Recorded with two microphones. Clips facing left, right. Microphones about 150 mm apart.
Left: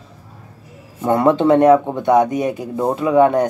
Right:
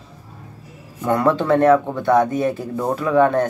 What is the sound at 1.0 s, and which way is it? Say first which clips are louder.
Speech: left 3 dB; 25° left (ahead or behind).